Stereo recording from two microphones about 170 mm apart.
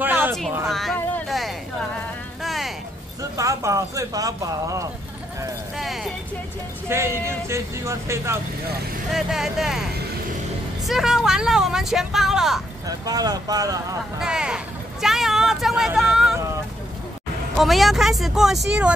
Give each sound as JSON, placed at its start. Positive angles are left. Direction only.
{"t": 0.0, "sound": "a sound", "side_deg": -10}
{"t": 0.7, "sound": "speech", "side_deg": 0}
{"t": 2.4, "sound": "a sound", "side_deg": 0}
{"t": 3.2, "sound": "speech", "side_deg": -20}
{"t": 5.8, "sound": "speech", "side_deg": 0}
{"t": 6.9, "sound": "speech", "side_deg": -15}
{"t": 9.1, "sound": "speech", "side_deg": 0}
{"t": 10.9, "sound": "speech", "side_deg": 0}
{"t": 12.8, "sound": "speech", "side_deg": -20}
{"t": 14.2, "sound": "a sound", "side_deg": -5}
{"t": 17.6, "sound": "speech", "side_deg": 0}